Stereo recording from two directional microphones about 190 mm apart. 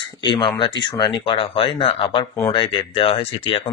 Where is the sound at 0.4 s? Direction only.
25° left (ahead or behind).